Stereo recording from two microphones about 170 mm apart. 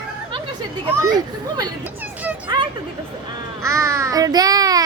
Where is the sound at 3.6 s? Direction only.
15° right (ahead or behind).